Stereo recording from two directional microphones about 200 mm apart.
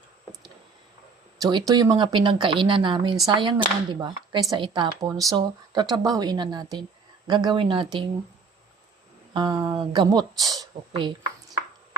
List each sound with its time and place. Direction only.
1.4 s speech: 20° right (ahead or behind)
9.3 s speech: 20° right (ahead or behind)